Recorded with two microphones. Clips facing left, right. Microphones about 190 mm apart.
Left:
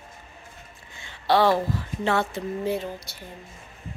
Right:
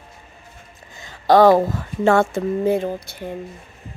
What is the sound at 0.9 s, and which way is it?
Speech, 40° right (ahead or behind).